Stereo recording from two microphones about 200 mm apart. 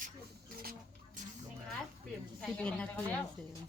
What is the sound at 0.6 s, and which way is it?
Rodents, 50° right (ahead or behind).